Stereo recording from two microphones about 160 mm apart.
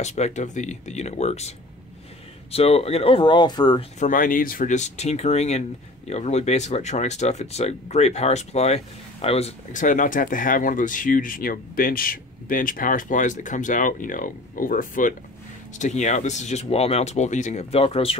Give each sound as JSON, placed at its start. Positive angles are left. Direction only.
{"t": 0.0, "sound": "speech", "side_deg": 45}
{"t": 2.5, "sound": "speech", "side_deg": 40}
{"t": 4.0, "sound": "speech", "side_deg": 60}
{"t": 15.8, "sound": "speech", "side_deg": 45}